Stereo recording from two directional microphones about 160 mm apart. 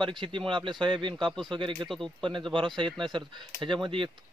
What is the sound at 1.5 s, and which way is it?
Speech, 30° right (ahead or behind).